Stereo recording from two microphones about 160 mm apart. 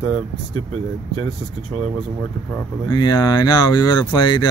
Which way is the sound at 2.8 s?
25° left (ahead or behind).